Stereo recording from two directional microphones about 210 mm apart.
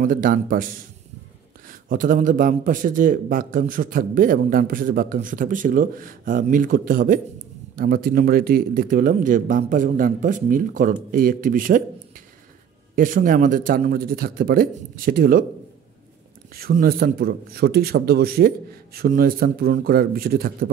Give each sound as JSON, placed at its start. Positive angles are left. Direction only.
{"t": 0.0, "sound": "a man's voice", "side_deg": -40}
{"t": 1.9, "sound": "a man's voice", "side_deg": -40}
{"t": 12.9, "sound": "a man's voice", "side_deg": -40}
{"t": 16.5, "sound": "a man's voice", "side_deg": -45}